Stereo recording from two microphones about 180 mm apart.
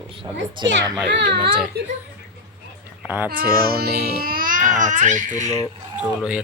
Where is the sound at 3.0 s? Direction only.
10° right (ahead or behind).